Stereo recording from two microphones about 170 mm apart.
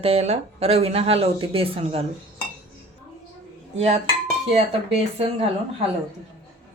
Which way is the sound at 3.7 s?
40° right (ahead or behind).